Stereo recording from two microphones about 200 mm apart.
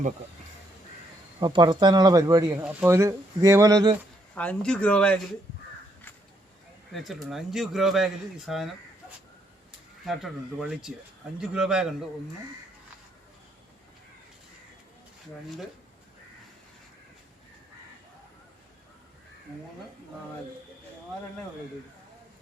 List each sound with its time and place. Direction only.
1.4 s speech: 20° right (ahead or behind)
4.4 s speech: 5° left (ahead or behind)
6.9 s speech: centre (ahead or behind)
10.1 s speech: centre (ahead or behind)